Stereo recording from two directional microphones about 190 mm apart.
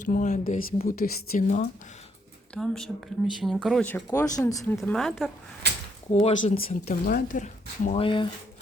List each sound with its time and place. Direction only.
0.0 s speech: 40° left (ahead or behind)
2.6 s speech: centre (ahead or behind)
4.8 s speech: centre (ahead or behind)
6.1 s speech: 35° left (ahead or behind)
6.7 s speech: 45° left (ahead or behind)
7.9 s speech: 25° left (ahead or behind)